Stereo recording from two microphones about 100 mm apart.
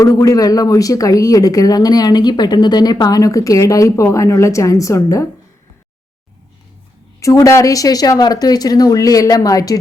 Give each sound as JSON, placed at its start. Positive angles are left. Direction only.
{"t": 0.0, "sound": "speech", "side_deg": 35}
{"t": 7.2, "sound": "speech", "side_deg": 30}